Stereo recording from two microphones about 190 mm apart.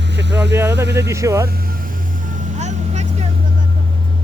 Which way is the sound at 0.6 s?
65° right (ahead or behind).